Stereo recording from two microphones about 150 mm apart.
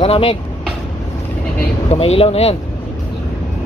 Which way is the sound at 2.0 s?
40° left (ahead or behind).